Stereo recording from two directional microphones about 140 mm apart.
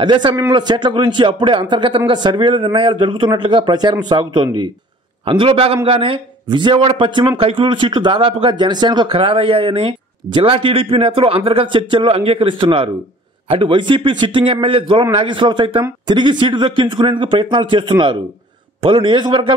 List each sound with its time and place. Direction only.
0.0 s speech: 35° right (ahead or behind)